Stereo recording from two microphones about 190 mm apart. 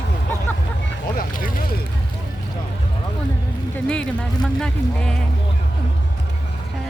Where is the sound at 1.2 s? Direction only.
45° left (ahead or behind).